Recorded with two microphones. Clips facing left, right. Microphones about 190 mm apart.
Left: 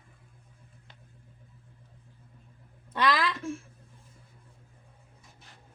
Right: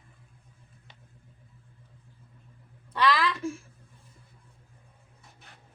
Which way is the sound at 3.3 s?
Centre (ahead or behind).